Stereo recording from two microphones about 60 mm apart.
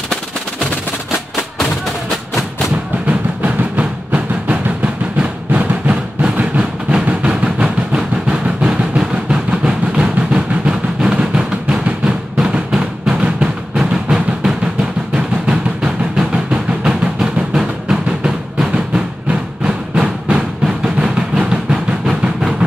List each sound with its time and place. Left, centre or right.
3.1 s drum: right